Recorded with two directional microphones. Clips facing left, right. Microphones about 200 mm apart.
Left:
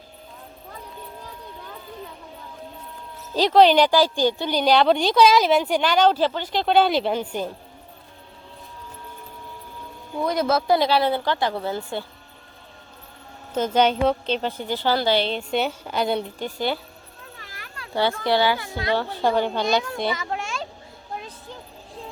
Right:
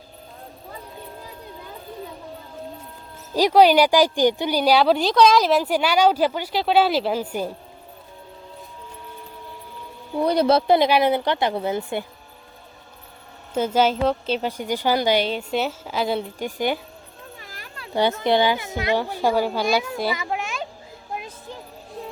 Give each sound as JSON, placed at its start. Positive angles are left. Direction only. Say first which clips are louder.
{"t": 3.3, "sound": "a woman's voice", "louder": "right 1 dB", "side_deg": -10}
{"t": 10.2, "sound": "speech", "louder": "right 3 dB", "side_deg": -30}
{"t": 13.5, "sound": "a woman's voice", "louder": "even", "side_deg": -10}
{"t": 16.6, "sound": "a woman's voice", "louder": "right 2 dB", "side_deg": -15}
{"t": 17.9, "sound": "a woman's voice", "louder": "right 2 dB", "side_deg": -20}
{"t": 20.1, "sound": "a sound", "louder": "right 1 dB", "side_deg": -15}